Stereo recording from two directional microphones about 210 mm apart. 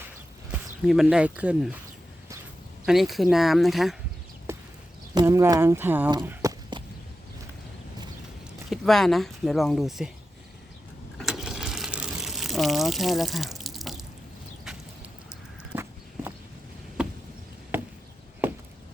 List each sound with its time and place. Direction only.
0.5 s speech: 5° right (ahead or behind)
2.8 s speech: centre (ahead or behind)
5.1 s speech: 15° right (ahead or behind)
6.2 s walk: 15° right (ahead or behind)
8.7 s speech: centre (ahead or behind)
11.2 s a sound: centre (ahead or behind)
15.7 s walk: 10° right (ahead or behind)
17.7 s chop: 10° right (ahead or behind)